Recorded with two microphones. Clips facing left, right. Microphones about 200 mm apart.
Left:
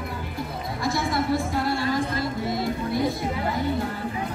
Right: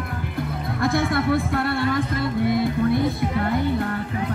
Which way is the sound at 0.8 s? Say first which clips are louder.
Right 4 dB; 55° right (ahead or behind).